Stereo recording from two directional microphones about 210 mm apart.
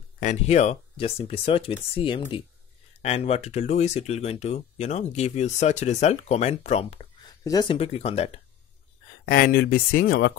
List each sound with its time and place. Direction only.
0.2 s speech: 35° left (ahead or behind)
7.4 s speech: 20° left (ahead or behind)
9.3 s speech: 45° left (ahead or behind)